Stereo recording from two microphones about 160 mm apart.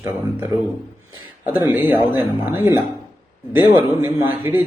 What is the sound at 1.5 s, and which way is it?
Speech, 10° right (ahead or behind).